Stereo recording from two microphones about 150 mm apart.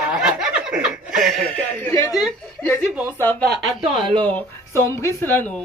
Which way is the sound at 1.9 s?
20° left (ahead or behind).